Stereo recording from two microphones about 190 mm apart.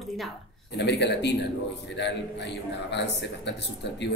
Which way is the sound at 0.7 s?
65° left (ahead or behind).